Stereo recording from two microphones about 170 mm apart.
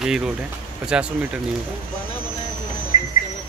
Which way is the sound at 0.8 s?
5° right (ahead or behind).